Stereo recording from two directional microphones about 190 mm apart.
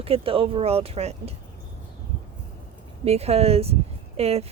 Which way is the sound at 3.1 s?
35° right (ahead or behind).